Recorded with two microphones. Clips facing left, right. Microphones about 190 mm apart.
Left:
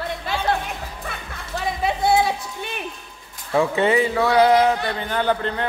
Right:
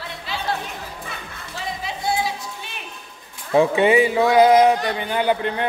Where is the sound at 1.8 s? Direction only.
60° left (ahead or behind).